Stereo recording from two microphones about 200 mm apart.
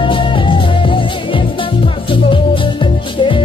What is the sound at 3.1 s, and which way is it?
Music, 25° left (ahead or behind).